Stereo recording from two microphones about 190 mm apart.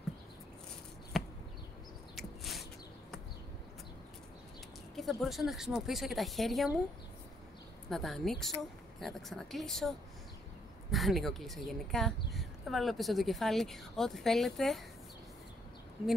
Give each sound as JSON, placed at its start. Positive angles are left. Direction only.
{"t": 1.1, "sound": "a sound", "side_deg": 0}
{"t": 4.9, "sound": "speech", "side_deg": 0}
{"t": 7.9, "sound": "speech", "side_deg": 0}